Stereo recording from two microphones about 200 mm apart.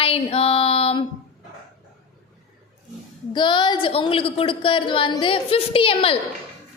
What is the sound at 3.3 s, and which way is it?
A woman's voice, 25° left (ahead or behind).